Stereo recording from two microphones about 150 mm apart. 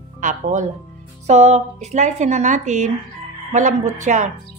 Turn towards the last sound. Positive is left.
turn(degrees=-50)  # may be behind; listen again after turning